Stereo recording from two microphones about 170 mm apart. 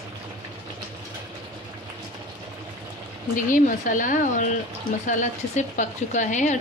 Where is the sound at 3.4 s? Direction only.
50° left (ahead or behind).